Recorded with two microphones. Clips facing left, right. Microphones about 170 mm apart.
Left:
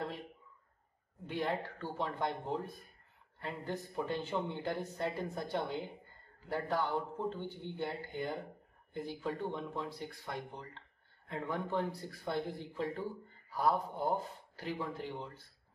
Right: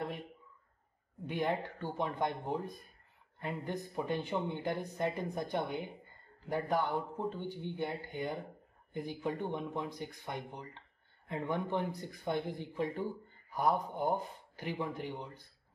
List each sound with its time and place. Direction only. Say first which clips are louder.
1.2 s speech: right 2 dB; 20° right (ahead or behind)